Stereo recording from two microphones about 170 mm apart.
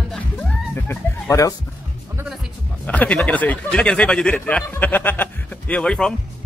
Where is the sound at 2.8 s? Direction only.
10° left (ahead or behind).